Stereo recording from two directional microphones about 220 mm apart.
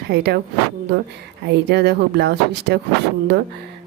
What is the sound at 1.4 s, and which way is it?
Speech, 50° right (ahead or behind).